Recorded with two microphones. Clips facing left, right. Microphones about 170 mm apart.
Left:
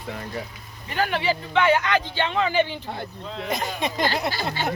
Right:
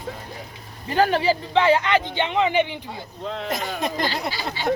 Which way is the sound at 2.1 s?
20° right (ahead or behind).